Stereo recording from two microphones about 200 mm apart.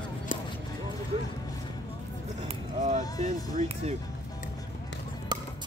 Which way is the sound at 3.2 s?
30° right (ahead or behind).